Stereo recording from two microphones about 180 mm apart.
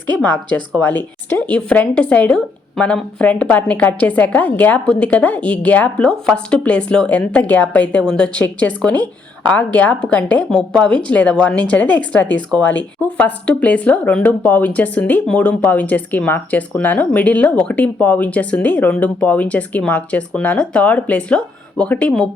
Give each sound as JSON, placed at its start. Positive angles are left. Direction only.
{"t": 0.2, "sound": "a woman's voice", "side_deg": 10}